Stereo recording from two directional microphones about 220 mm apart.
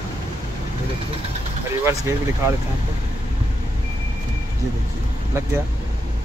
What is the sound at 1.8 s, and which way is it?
Speech, 10° right (ahead or behind).